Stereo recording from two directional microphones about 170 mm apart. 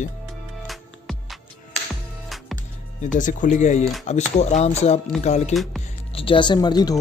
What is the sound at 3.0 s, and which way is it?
Speech, 50° left (ahead or behind).